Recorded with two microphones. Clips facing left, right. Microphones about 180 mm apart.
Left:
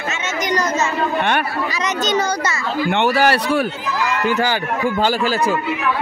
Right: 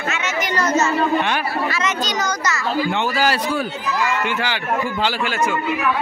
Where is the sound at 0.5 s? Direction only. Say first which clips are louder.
Even; 15° left (ahead or behind).